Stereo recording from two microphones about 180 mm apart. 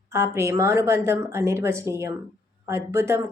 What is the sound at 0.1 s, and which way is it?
Speech, 15° right (ahead or behind).